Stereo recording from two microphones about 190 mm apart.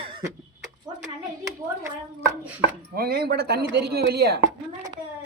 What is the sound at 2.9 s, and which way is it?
Chopping, 55° right (ahead or behind).